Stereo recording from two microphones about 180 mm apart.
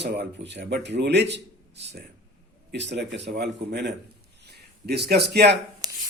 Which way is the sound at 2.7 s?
70° right (ahead or behind).